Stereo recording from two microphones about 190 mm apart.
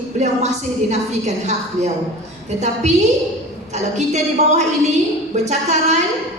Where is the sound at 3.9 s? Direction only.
35° right (ahead or behind).